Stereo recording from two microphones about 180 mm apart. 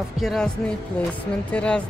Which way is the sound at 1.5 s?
5° left (ahead or behind).